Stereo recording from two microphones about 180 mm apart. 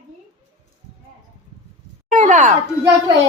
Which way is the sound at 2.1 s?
45° right (ahead or behind).